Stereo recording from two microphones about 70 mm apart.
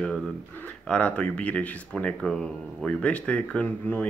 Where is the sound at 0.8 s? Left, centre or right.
Centre.